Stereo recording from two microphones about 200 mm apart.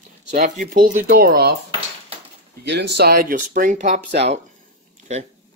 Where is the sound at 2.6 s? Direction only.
60° right (ahead or behind).